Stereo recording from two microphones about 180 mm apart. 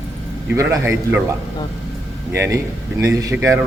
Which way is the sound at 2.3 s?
15° right (ahead or behind).